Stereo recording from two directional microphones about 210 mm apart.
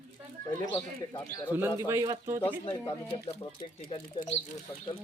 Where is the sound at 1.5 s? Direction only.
10° right (ahead or behind).